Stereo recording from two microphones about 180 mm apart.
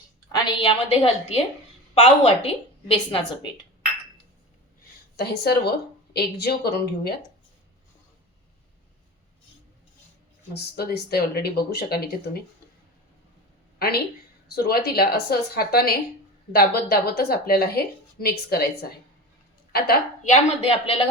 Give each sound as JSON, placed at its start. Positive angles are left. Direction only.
{"t": 0.3, "sound": "a woman's voice", "side_deg": 25}
{"t": 5.1, "sound": "a woman's voice", "side_deg": 60}
{"t": 10.5, "sound": "a woman's voice", "side_deg": 60}
{"t": 13.7, "sound": "a woman's voice", "side_deg": 60}
{"t": 20.7, "sound": "a woman's voice", "side_deg": 30}